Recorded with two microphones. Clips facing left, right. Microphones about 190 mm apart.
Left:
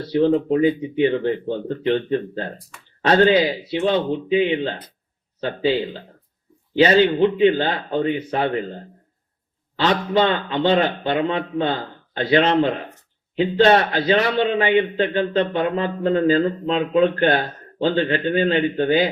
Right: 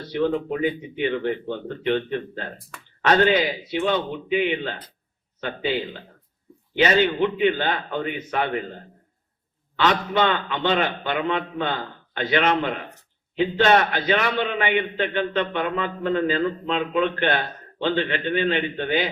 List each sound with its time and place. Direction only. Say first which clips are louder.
0.1 s a man's voice: left 6 dB; 30° left (ahead or behind)